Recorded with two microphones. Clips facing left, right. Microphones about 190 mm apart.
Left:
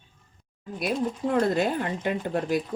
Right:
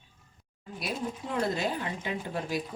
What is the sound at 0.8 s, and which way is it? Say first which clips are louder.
Speech: left 7 dB; 55° left (ahead or behind).